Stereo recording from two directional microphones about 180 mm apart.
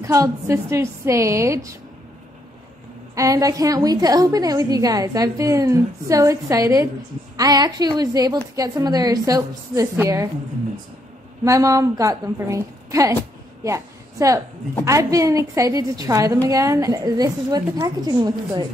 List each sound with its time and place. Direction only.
0.0 s a woman's voice: 15° right (ahead or behind)
3.2 s a woman's voice: 20° right (ahead or behind)
11.4 s a woman's voice: 20° right (ahead or behind)